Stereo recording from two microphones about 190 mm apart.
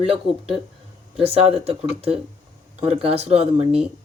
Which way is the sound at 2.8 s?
30° right (ahead or behind).